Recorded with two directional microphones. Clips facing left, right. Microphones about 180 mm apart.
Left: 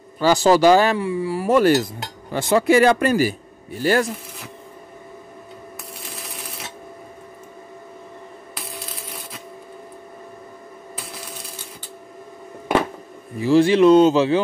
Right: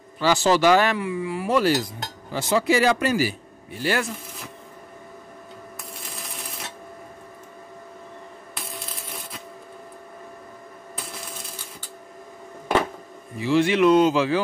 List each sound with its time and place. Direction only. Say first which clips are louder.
0.2 s speech: left 4 dB; 40° left (ahead or behind)
6.1 s a sound: left 1 dB; centre (ahead or behind)
8.7 s crushing: left 1 dB; centre (ahead or behind)
13.4 s speech: left 5 dB; 35° left (ahead or behind)